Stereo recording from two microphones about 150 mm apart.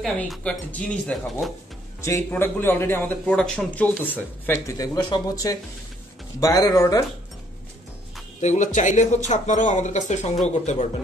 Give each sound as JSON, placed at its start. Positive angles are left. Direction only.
{"t": 0.0, "sound": "speech", "side_deg": 5}
{"t": 2.0, "sound": "speech", "side_deg": 20}
{"t": 4.7, "sound": "speech", "side_deg": 25}
{"t": 8.4, "sound": "speech", "side_deg": 50}